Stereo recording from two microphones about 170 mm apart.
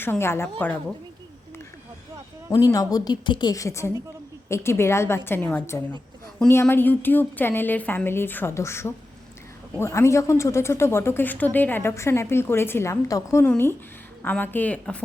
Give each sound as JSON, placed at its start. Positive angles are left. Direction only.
{"t": 0.0, "sound": "speech", "side_deg": 15}
{"t": 2.6, "sound": "a woman's voice", "side_deg": 20}